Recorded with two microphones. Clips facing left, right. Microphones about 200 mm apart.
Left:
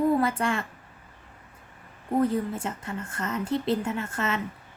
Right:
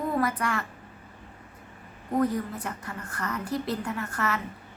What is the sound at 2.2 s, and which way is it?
Speech, 25° left (ahead or behind).